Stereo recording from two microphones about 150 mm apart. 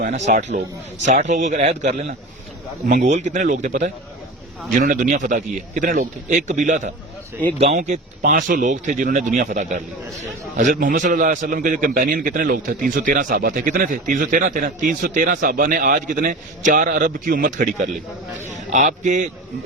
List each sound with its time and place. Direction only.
0.0 s a man's voice: 55° right (ahead or behind)